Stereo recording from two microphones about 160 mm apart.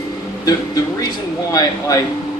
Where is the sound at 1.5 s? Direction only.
25° left (ahead or behind).